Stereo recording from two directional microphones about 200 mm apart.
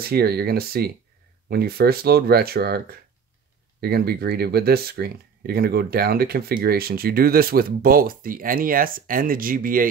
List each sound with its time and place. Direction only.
0.0 s speech: 50° right (ahead or behind)